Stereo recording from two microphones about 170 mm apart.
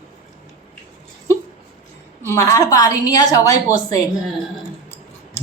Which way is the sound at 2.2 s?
15° left (ahead or behind).